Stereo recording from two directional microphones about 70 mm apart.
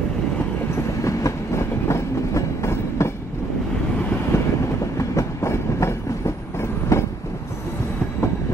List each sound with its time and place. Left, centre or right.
1.0 s train: left
4.3 s vehicle: left
4.9 s train: left